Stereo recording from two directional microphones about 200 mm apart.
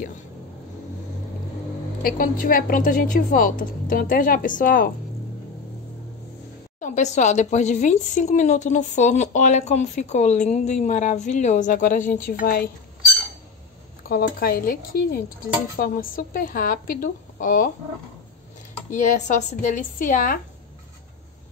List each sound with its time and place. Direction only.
2.0 s speech: 45° left (ahead or behind)
6.8 s a woman's voice: 35° left (ahead or behind)
14.0 s speech: 45° left (ahead or behind)
18.9 s a woman's voice: 35° left (ahead or behind)